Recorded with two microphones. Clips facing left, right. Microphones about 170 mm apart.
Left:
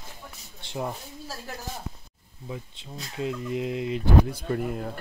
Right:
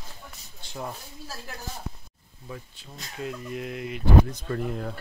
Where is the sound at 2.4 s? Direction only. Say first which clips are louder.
Left 3 dB; 20° left (ahead or behind).